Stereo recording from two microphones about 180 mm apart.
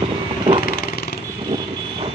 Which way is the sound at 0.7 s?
55° left (ahead or behind).